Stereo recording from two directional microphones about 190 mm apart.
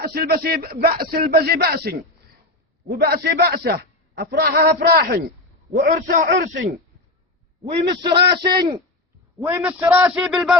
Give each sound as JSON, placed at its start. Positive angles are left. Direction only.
{"t": 0.0, "sound": "a man's voice", "side_deg": -55}
{"t": 7.6, "sound": "a man's voice", "side_deg": -25}